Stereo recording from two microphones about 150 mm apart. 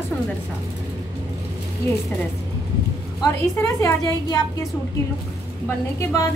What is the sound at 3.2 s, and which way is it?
A woman's voice, 20° left (ahead or behind).